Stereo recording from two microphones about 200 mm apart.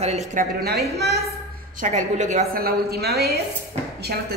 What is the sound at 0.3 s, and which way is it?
Speech, 45° right (ahead or behind).